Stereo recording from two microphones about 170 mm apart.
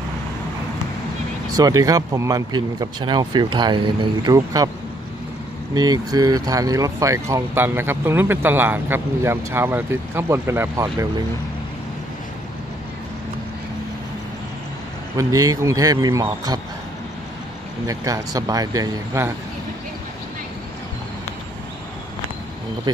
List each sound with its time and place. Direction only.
1.6 s speech: 20° right (ahead or behind)
5.8 s speech: 25° right (ahead or behind)
15.1 s speech: 20° right (ahead or behind)
17.8 s speech: 20° right (ahead or behind)